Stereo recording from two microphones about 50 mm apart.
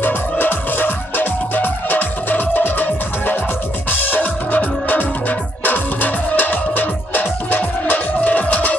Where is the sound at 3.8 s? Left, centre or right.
Left.